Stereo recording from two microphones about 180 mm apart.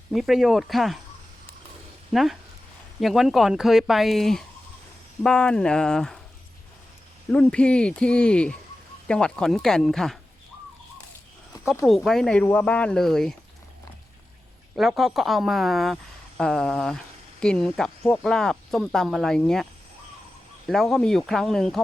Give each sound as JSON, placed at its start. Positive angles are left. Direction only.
{"t": 0.1, "sound": "speech", "side_deg": 0}
{"t": 2.1, "sound": "speech", "side_deg": 0}
{"t": 7.3, "sound": "speech", "side_deg": 5}
{"t": 11.5, "sound": "a sound", "side_deg": 20}
{"t": 11.9, "sound": "speech", "side_deg": 0}
{"t": 14.8, "sound": "speech", "side_deg": 0}
{"t": 20.7, "sound": "speech", "side_deg": 0}